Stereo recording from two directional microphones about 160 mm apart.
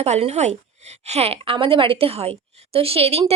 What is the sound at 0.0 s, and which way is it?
A woman's voice, 40° right (ahead or behind).